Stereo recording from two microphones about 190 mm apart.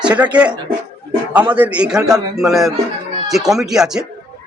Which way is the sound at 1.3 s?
10° right (ahead or behind).